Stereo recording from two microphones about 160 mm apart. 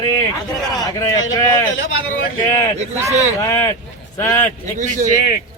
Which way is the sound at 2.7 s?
45° right (ahead or behind).